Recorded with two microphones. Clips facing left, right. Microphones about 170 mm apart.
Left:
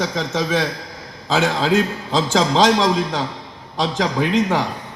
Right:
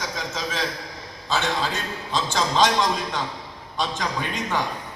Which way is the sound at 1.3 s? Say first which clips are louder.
Left 8 dB; 90° left.